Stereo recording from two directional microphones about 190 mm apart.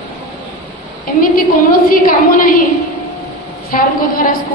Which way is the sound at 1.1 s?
50° left (ahead or behind).